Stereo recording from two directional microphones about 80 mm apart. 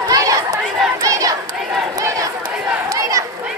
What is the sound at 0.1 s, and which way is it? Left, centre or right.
Chatter, right.